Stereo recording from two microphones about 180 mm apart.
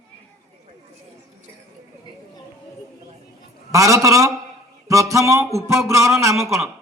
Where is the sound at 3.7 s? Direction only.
20° right (ahead or behind).